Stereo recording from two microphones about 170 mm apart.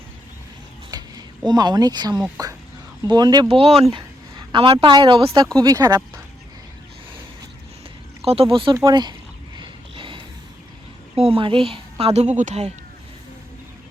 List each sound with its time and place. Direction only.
0.9 s a sound: 25° right (ahead or behind)
1.5 s speech: 25° right (ahead or behind)
3.5 s a woman's voice: 35° right (ahead or behind)
8.2 s speech: 35° right (ahead or behind)
8.7 s speech: 20° right (ahead or behind)
9.6 s a sound: 30° right (ahead or behind)
11.1 s speech: 30° right (ahead or behind)